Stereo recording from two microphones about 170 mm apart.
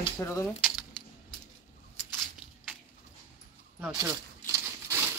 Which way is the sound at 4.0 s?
20° right (ahead or behind).